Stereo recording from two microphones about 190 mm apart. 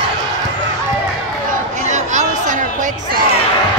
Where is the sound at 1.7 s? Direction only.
40° right (ahead or behind).